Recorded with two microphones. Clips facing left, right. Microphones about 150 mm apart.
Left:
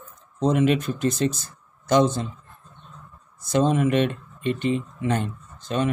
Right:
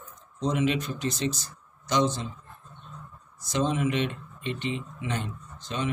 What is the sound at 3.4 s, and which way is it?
Speech, 55° left (ahead or behind).